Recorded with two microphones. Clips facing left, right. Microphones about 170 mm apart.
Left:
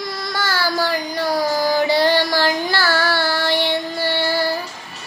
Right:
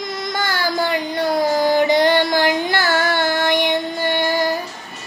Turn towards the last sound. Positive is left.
turn(degrees=-15)  # may be behind; listen again after turning